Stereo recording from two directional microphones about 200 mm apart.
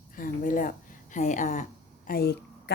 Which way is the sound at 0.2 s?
40° left (ahead or behind).